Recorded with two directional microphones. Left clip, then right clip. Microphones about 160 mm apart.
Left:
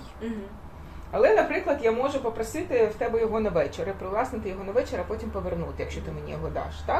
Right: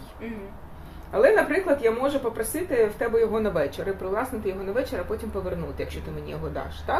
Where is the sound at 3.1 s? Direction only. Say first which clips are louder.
Right 2 dB; 30° right (ahead or behind).